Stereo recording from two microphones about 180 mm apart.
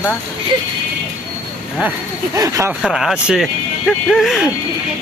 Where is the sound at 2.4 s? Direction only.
15° right (ahead or behind).